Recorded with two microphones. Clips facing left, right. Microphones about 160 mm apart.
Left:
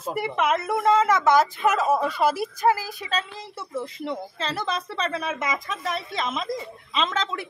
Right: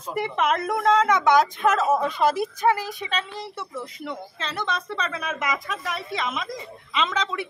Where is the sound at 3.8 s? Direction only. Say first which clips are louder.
Left 5 dB; 30° left (ahead or behind).